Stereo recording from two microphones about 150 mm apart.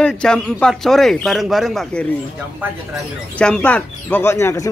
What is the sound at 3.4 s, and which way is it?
Speech, 10° left (ahead or behind).